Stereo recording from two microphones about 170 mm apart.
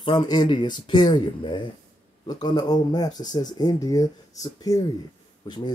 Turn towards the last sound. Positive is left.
turn(degrees=25)  # may be behind; listen again after turning